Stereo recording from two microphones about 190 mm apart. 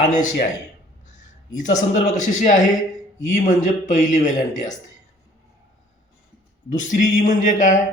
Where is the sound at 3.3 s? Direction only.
40° left (ahead or behind).